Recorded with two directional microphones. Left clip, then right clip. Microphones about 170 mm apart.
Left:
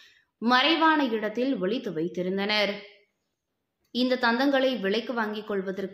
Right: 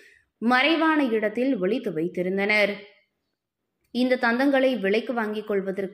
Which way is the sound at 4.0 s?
15° right (ahead or behind).